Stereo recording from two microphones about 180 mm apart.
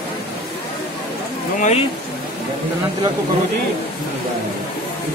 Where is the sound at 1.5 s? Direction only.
40° left (ahead or behind).